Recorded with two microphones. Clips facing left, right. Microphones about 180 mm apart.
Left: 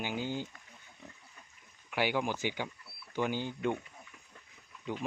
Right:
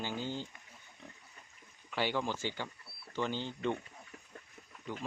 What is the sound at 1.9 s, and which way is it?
Speech, 10° left (ahead or behind).